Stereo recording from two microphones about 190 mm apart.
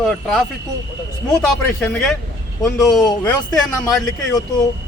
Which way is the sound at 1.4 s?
Centre (ahead or behind).